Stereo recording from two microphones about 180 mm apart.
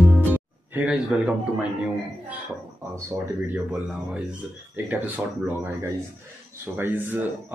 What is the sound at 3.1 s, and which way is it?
Speech, 10° right (ahead or behind).